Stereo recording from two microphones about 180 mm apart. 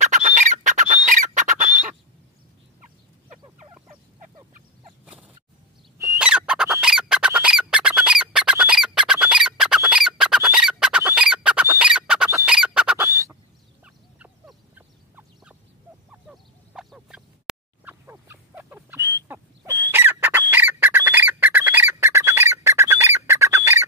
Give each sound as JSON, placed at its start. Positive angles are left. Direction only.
{"t": 0.4, "sound": "squawk", "side_deg": -45}
{"t": 1.6, "sound": "bird", "side_deg": -10}
{"t": 5.0, "sound": "a sound", "side_deg": -5}
{"t": 6.1, "sound": "squawk", "side_deg": -5}
{"t": 13.0, "sound": "fowl", "side_deg": -15}
{"t": 13.8, "sound": "frog", "side_deg": -5}
{"t": 16.1, "sound": "quack", "side_deg": -5}